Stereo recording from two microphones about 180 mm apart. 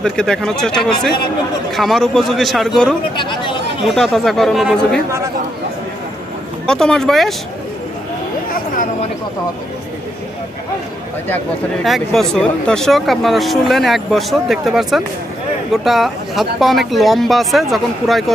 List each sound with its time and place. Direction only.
0.0 s speech: 5° left (ahead or behind)
3.2 s chatter: 25° left (ahead or behind)
3.8 s speech: centre (ahead or behind)
6.7 s speech: 5° left (ahead or behind)
11.8 s speech: centre (ahead or behind)